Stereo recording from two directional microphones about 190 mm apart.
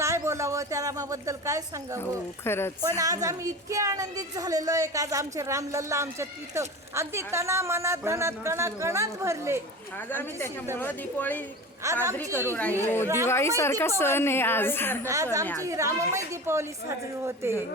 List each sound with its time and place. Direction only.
0.0 s a woman's voice: 15° right (ahead or behind)
2.0 s a woman's voice: 10° left (ahead or behind)
3.0 s a woman's voice: 20° right (ahead or behind)
10.1 s a woman's voice: 10° left (ahead or behind)
11.8 s a woman's voice: 15° right (ahead or behind)
12.5 s a woman's voice: 10° left (ahead or behind)
15.0 s a woman's voice: 15° right (ahead or behind)